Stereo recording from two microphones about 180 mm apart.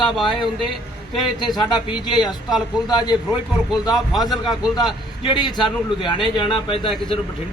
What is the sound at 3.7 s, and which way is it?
Speech, centre (ahead or behind).